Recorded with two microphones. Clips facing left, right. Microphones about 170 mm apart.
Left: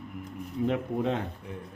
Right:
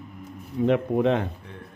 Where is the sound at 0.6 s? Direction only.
75° right (ahead or behind).